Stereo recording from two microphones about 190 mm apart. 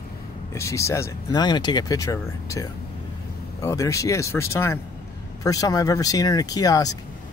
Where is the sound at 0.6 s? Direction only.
15° left (ahead or behind).